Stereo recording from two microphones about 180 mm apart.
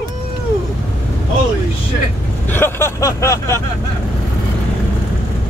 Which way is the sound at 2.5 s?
15° left (ahead or behind).